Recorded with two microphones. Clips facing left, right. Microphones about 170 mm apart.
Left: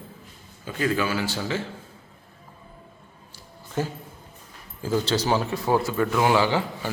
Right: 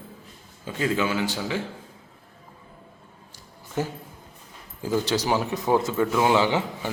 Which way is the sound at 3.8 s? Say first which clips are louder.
Even; 15° right (ahead or behind).